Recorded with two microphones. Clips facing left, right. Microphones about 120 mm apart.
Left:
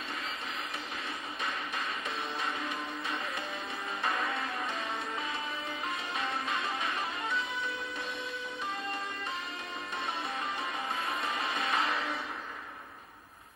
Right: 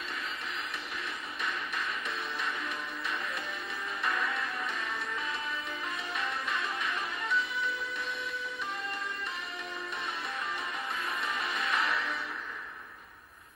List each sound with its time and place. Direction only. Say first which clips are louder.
1.4 s music: right 1 dB; 25° left (ahead or behind)
4.0 s music: even; 25° left (ahead or behind)
6.1 s music: even; 25° left (ahead or behind)
11.1 s music: left 1 dB; 25° left (ahead or behind)